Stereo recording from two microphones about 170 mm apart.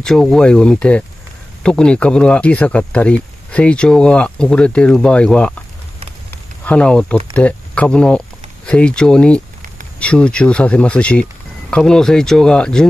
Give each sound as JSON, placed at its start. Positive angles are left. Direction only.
{"t": 0.0, "sound": "speech", "side_deg": 0}
{"t": 6.6, "sound": "speech", "side_deg": 5}